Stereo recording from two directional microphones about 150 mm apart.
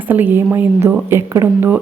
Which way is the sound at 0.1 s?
10° right (ahead or behind).